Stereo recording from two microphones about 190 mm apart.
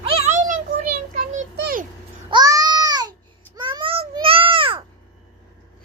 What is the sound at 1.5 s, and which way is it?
Speech, 55° right (ahead or behind).